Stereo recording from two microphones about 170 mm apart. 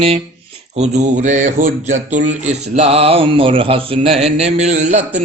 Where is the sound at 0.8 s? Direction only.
45° right (ahead or behind).